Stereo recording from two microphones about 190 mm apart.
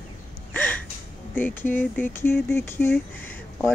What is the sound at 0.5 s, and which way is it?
Gasp, 10° left (ahead or behind).